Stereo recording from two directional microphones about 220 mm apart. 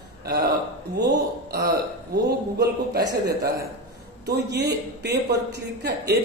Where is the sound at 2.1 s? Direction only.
50° right (ahead or behind).